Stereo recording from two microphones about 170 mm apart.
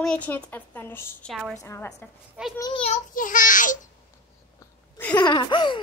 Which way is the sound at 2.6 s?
25° left (ahead or behind).